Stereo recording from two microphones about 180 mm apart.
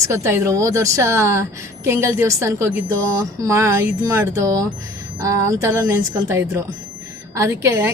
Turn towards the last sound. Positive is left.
turn(degrees=-15)  # may be behind; listen again after turning